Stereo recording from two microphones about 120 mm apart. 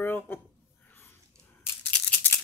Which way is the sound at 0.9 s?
20° left (ahead or behind).